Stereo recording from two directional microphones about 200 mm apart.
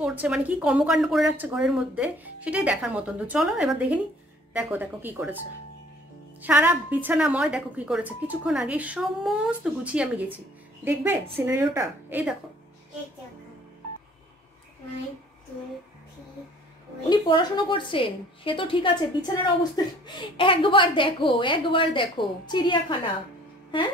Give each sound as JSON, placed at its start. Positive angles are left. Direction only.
{"t": 0.0, "sound": "speech", "side_deg": -5}
{"t": 6.4, "sound": "speech", "side_deg": -5}
{"t": 17.1, "sound": "a woman's voice", "side_deg": 20}